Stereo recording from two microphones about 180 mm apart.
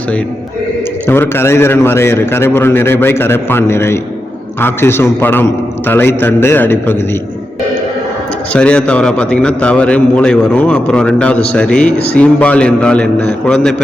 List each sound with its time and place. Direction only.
1.0 s a man's voice: 10° left (ahead or behind)
8.5 s a man's voice: 5° left (ahead or behind)